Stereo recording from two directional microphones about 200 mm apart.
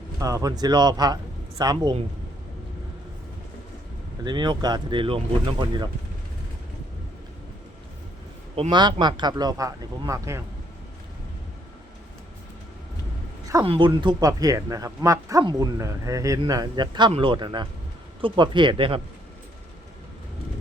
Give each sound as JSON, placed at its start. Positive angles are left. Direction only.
{"t": 0.2, "sound": "speech", "side_deg": -15}
{"t": 4.2, "sound": "speech", "side_deg": -20}
{"t": 8.5, "sound": "speech", "side_deg": -25}
{"t": 13.7, "sound": "speech", "side_deg": -25}